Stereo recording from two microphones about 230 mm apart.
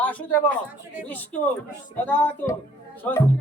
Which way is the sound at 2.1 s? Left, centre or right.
Centre.